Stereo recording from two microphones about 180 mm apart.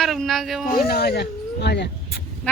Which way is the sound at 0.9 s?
65° left (ahead or behind).